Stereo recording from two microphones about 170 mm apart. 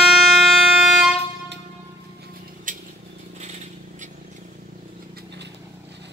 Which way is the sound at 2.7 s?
50° right (ahead or behind).